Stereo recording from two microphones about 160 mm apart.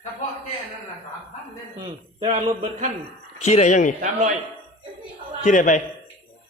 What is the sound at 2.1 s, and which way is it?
Speech, 40° right (ahead or behind).